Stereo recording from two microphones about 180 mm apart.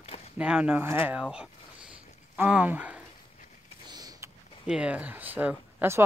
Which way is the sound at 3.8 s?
20° right (ahead or behind).